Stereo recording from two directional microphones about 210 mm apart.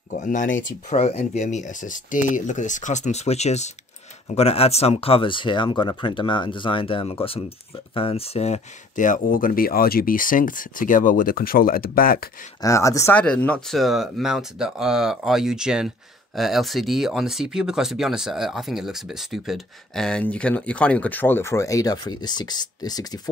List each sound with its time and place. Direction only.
0.1 s speech: 35° left (ahead or behind)
12.6 s speech: 15° left (ahead or behind)